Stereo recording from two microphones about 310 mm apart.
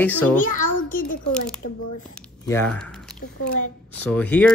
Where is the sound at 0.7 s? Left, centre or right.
Left.